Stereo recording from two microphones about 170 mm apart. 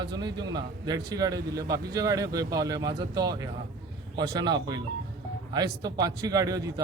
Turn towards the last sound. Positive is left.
turn(degrees=-20)  # may be behind; listen again after turning